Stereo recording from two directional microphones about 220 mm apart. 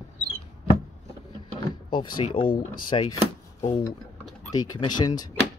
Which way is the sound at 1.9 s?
20° left (ahead or behind).